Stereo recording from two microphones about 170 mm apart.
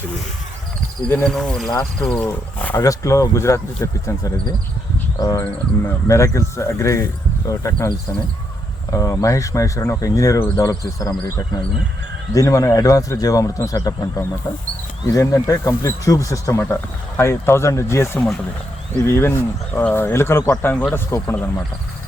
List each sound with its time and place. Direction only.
1.0 s speech: 5° left (ahead or behind)
2.8 s speech: 20° left (ahead or behind)
12.3 s speech: 20° left (ahead or behind)